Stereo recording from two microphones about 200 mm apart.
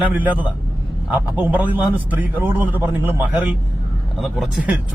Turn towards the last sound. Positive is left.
turn(degrees=-5)  # may be behind; listen again after turning